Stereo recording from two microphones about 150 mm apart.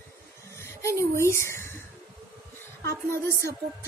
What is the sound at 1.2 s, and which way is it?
Speech, 20° left (ahead or behind).